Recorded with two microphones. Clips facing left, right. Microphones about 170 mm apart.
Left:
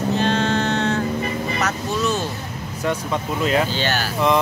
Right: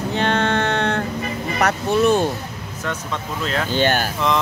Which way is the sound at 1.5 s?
60° right (ahead or behind).